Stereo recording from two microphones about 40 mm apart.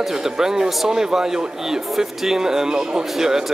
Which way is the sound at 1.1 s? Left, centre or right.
Centre.